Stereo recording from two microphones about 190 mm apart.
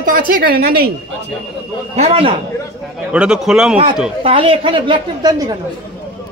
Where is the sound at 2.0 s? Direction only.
30° right (ahead or behind).